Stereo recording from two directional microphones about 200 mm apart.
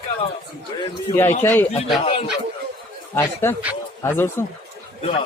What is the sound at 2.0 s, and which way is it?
Speech, 30° left (ahead or behind).